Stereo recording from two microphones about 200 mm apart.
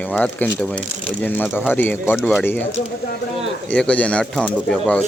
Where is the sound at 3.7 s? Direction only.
5° left (ahead or behind).